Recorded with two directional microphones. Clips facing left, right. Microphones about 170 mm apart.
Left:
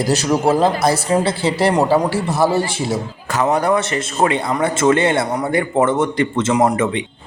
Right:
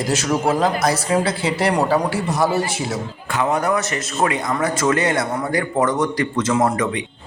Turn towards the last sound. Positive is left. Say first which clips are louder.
# left 3 dB
turn(degrees=20)  # may be behind; listen again after turning